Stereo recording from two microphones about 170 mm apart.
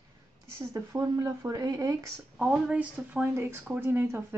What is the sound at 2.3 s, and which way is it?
Speech, 5° right (ahead or behind).